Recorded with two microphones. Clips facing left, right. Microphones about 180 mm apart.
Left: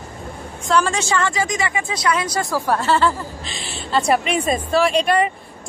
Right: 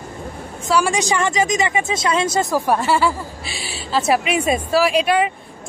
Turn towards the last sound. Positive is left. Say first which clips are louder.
# even
turn(degrees=0)  # may be behind; listen again after turning